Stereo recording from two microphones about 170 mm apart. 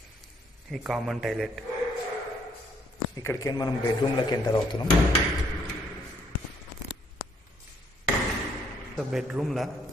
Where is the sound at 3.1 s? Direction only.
20° left (ahead or behind).